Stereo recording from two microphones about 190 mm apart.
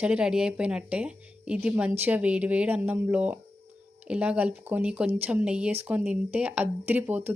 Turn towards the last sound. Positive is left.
turn(degrees=-10)  # may be behind; listen again after turning